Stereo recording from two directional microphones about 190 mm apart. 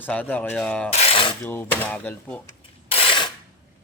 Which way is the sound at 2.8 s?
30° left (ahead or behind).